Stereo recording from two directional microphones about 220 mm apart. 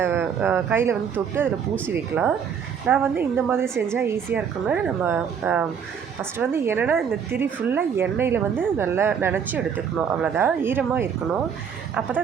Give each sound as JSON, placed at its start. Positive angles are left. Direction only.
{"t": 0.0, "sound": "speech", "side_deg": -10}